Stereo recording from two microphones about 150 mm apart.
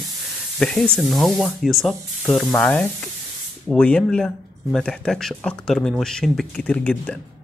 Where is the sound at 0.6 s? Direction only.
5° left (ahead or behind).